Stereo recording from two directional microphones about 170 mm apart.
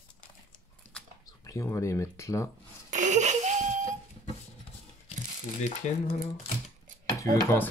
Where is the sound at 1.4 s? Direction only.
20° left (ahead or behind).